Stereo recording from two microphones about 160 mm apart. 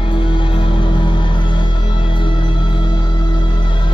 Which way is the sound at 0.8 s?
30° left (ahead or behind).